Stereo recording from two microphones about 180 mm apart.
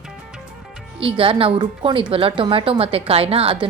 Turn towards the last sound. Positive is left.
turn(degrees=-30)  # may be behind; listen again after turning